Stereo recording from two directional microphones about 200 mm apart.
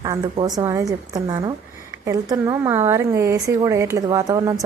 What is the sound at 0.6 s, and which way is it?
Speech, 15° right (ahead or behind).